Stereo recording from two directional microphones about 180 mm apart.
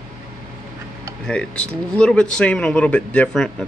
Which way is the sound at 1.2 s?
5° left (ahead or behind).